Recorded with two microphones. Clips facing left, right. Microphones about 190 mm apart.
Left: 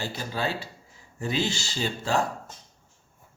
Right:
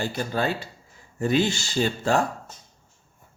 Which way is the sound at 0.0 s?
55° right (ahead or behind).